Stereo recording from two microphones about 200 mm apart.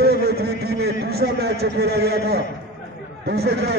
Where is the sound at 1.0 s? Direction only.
50° right (ahead or behind).